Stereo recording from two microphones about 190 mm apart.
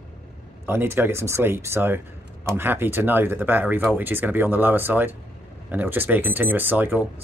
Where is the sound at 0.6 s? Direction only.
10° right (ahead or behind).